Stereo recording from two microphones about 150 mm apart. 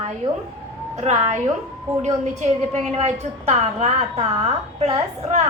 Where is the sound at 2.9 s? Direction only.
45° right (ahead or behind).